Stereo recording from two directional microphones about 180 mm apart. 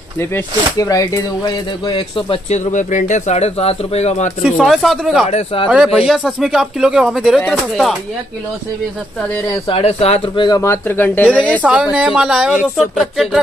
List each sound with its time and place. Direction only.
0.7 s speech: 20° left (ahead or behind)
2.5 s speech: 45° left (ahead or behind)
4.6 s speech: centre (ahead or behind)
9.7 s speech: 35° left (ahead or behind); by 11.6 s 10° left (ahead or behind)
11.6 s speech: 5° right (ahead or behind)